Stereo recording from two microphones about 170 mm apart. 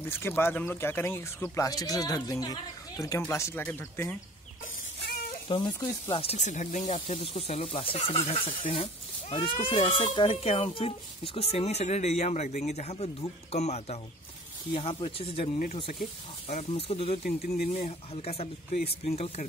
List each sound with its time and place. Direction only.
0.0 s speech: 15° left (ahead or behind)
5.5 s speech: 25° left (ahead or behind)
6.3 s speech: 45° left (ahead or behind)
16.7 s speech: 35° left (ahead or behind)
17.2 s speech: 65° left (ahead or behind)
17.8 s speech: 35° left (ahead or behind)